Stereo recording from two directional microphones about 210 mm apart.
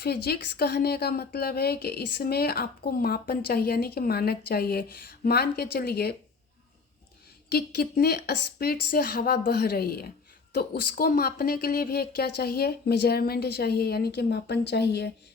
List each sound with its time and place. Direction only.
0.0 s speech: 50° left (ahead or behind)
7.5 s speech: 50° left (ahead or behind)